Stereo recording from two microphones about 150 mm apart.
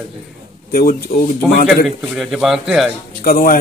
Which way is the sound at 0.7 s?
75° left (ahead or behind).